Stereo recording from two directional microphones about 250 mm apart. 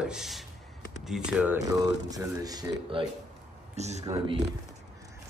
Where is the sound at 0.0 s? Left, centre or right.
Centre; by 4.0 s right.